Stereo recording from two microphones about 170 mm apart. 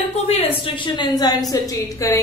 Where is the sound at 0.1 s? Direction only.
40° left (ahead or behind).